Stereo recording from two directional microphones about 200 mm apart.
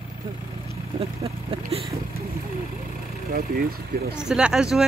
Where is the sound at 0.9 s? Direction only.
30° right (ahead or behind).